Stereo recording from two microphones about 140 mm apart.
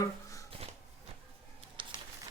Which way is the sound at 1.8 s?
35° right (ahead or behind).